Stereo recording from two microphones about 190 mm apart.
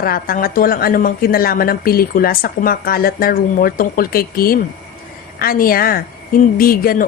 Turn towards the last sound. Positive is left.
turn(degrees=50)  # may be behind; listen again after turning